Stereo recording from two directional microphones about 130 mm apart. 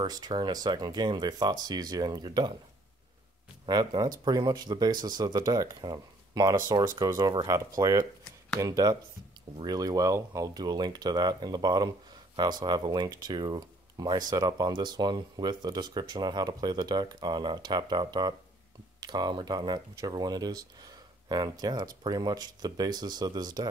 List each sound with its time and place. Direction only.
0.0 s speech: 30° right (ahead or behind)
3.6 s speech: 30° right (ahead or behind)